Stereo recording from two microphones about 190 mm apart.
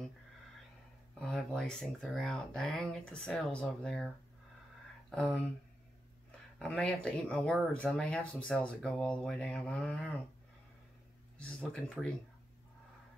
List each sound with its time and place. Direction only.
1.2 s speech: 5° left (ahead or behind)
5.1 s speech: 5° left (ahead or behind)
6.6 s speech: 5° left (ahead or behind)
11.3 s speech: 5° left (ahead or behind)